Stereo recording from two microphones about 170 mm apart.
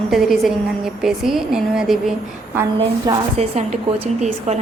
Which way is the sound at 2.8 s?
35° right (ahead or behind).